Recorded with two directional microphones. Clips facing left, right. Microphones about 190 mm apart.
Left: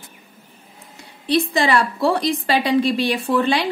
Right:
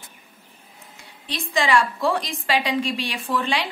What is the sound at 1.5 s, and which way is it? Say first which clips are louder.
A woman's voice: left 2 dB; 35° left (ahead or behind).